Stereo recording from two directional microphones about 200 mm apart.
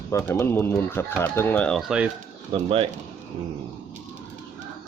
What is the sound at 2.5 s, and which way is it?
Speech, 25° right (ahead or behind).